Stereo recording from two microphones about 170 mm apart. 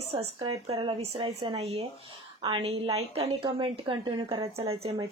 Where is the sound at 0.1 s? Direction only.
35° right (ahead or behind).